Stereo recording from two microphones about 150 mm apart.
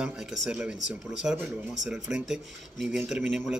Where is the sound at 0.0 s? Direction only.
5° right (ahead or behind).